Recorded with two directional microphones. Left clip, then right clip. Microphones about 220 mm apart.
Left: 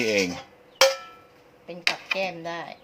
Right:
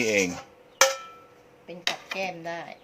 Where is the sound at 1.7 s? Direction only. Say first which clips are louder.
Left 5 dB; 10° left (ahead or behind).